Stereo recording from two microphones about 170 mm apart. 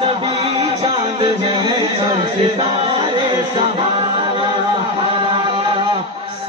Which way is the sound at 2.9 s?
30° right (ahead or behind).